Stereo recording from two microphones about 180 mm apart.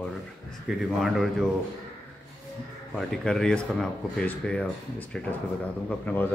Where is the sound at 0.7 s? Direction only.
5° right (ahead or behind).